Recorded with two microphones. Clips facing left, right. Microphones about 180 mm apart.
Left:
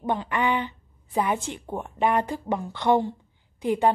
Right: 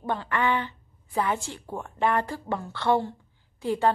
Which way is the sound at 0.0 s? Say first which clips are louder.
Left 2 dB; 15° left (ahead or behind).